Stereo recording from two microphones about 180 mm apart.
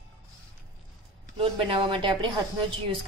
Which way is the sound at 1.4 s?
30° right (ahead or behind).